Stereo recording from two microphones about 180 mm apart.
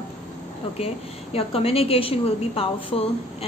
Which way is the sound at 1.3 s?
30° left (ahead or behind).